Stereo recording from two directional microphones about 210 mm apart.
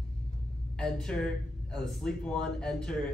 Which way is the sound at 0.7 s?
5° left (ahead or behind).